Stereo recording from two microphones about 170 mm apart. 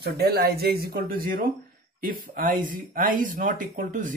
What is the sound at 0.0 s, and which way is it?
Speech, 70° right (ahead or behind).